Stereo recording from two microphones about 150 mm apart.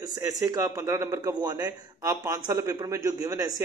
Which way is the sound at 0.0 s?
25° right (ahead or behind).